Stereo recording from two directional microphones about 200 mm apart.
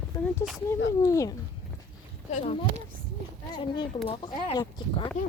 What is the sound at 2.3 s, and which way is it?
Speech, 30° left (ahead or behind).